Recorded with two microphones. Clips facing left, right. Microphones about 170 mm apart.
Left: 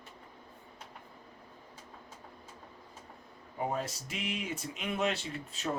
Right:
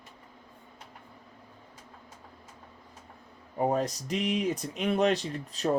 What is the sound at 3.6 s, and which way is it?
Speech, 40° right (ahead or behind).